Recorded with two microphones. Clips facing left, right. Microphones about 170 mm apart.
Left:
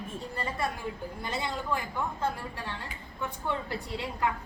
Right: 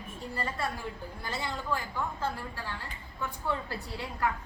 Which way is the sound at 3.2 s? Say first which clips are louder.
Left 1 dB; 20° left (ahead or behind).